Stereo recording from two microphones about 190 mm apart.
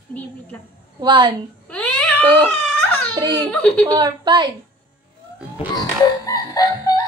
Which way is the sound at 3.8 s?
20° right (ahead or behind).